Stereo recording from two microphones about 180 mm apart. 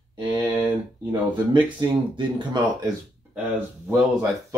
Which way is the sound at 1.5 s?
25° right (ahead or behind).